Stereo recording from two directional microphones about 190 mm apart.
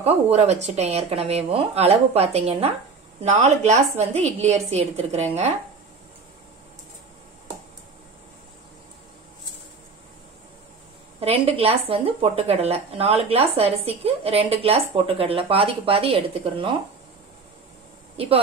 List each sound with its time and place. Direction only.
0.0 s speech: 35° right (ahead or behind)
11.1 s speech: 30° right (ahead or behind)
18.2 s a woman's voice: 30° right (ahead or behind)